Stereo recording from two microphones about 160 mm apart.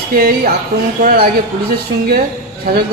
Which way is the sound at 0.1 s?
70° right (ahead or behind).